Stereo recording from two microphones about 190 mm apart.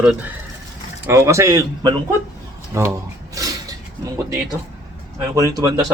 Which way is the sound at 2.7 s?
15° right (ahead or behind).